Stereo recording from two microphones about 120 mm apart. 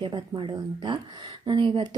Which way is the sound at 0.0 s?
40° right (ahead or behind).